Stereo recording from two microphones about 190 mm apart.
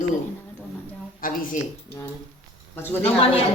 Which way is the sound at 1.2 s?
50° left (ahead or behind).